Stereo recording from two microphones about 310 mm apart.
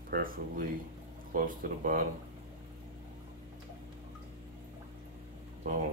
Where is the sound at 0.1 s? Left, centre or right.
Right.